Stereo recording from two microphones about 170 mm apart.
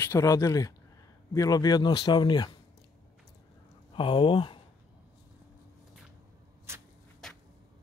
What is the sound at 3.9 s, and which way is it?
Speech, 30° left (ahead or behind).